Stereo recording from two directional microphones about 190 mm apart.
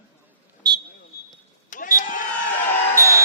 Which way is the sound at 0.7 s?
20° right (ahead or behind).